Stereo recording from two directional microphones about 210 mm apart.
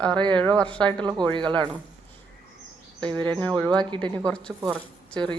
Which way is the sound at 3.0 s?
5° left (ahead or behind).